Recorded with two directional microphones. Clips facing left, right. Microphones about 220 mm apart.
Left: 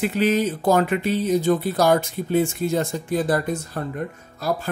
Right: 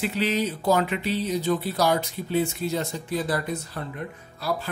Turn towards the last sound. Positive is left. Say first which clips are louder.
# left 3 dB
turn(degrees=45)  # may be behind; listen again after turning